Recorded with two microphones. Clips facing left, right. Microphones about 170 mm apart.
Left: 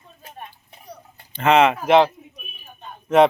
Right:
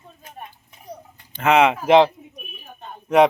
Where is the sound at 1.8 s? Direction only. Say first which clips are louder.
Right 1 dB; 25° right (ahead or behind).